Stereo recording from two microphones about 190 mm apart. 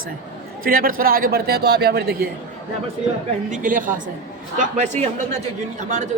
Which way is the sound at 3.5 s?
45° right (ahead or behind).